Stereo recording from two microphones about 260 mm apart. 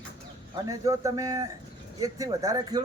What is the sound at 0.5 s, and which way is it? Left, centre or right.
Speech, centre.